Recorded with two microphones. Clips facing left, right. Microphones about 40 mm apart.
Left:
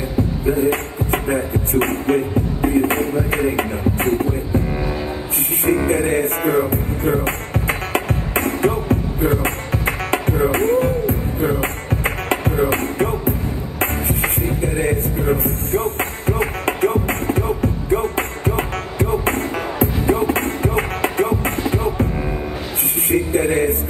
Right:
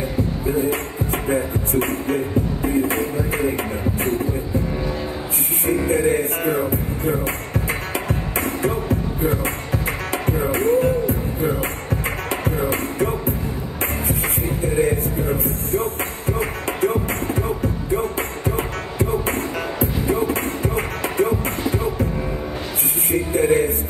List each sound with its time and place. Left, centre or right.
0.5 s music: left
5.7 s music: left
23.3 s music: left